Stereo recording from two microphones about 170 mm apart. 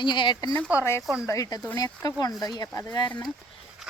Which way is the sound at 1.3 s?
20° left (ahead or behind).